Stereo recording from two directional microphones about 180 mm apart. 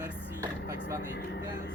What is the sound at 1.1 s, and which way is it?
Speech, 60° left (ahead or behind).